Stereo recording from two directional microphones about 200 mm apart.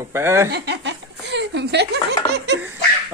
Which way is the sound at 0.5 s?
55° right (ahead or behind).